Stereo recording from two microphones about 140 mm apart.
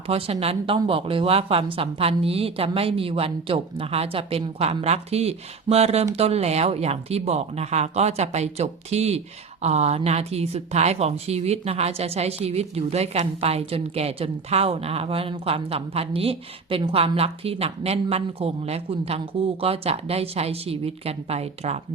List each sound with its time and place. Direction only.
0.1 s speech: 45° right (ahead or behind)